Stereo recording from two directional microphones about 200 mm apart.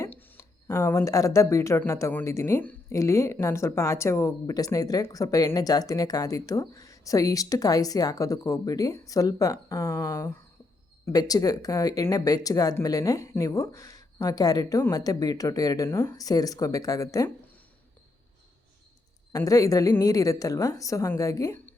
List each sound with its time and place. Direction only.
0.0 s speech: 10° left (ahead or behind)
19.3 s speech: 15° left (ahead or behind)